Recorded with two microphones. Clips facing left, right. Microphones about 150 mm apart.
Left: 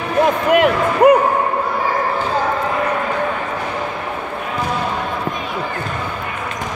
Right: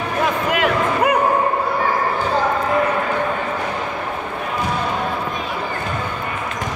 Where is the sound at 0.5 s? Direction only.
50° left (ahead or behind).